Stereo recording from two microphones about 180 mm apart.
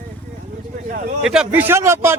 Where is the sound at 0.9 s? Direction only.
50° right (ahead or behind).